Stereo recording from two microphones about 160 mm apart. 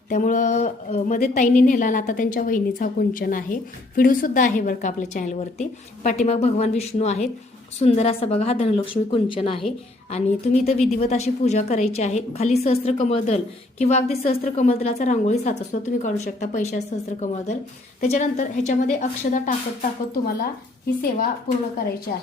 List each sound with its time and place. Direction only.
0.1 s a woman's voice: 55° left (ahead or behind); by 21.2 s 70° left (ahead or behind)